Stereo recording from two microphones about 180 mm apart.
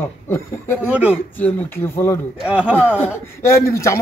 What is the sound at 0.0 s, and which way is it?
Speech, 10° left (ahead or behind).